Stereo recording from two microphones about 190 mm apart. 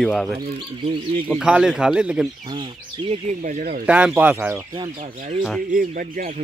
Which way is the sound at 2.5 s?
25° right (ahead or behind).